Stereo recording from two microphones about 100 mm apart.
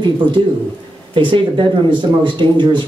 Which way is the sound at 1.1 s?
55° right (ahead or behind).